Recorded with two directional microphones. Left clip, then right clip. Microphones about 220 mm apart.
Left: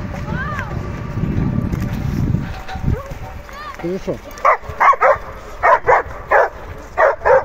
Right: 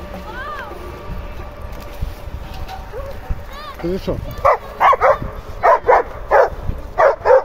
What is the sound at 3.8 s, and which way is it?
Speech, 10° right (ahead or behind).